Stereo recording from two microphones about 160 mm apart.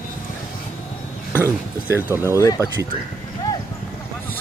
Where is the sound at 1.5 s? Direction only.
15° right (ahead or behind).